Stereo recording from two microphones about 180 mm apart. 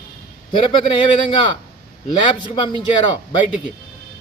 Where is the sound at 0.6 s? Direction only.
25° left (ahead or behind).